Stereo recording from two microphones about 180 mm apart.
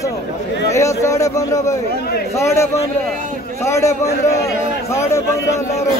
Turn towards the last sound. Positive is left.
turn(degrees=15)  # may be behind; listen again after turning